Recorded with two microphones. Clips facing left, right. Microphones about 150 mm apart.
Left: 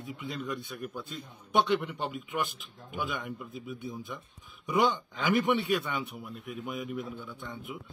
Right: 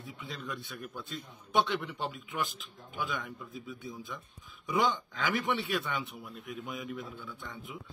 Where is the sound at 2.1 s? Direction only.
5° left (ahead or behind).